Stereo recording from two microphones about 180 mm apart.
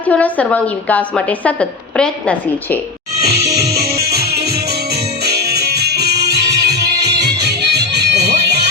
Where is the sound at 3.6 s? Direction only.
60° right (ahead or behind).